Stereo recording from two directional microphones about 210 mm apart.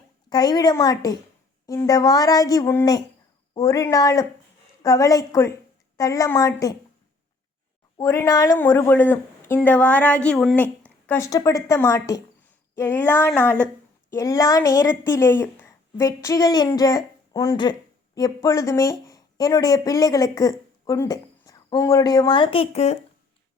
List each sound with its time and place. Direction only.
0.3 s a woman's voice: 20° left (ahead or behind)
7.9 s a woman's voice: 15° left (ahead or behind); by 23.0 s 30° left (ahead or behind)